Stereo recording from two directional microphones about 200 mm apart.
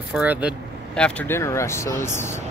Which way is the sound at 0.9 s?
5° left (ahead or behind).